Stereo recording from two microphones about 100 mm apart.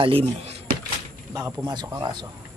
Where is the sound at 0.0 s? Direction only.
80° right.